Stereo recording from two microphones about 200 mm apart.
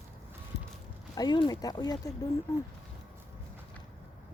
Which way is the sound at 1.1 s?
20° left (ahead or behind).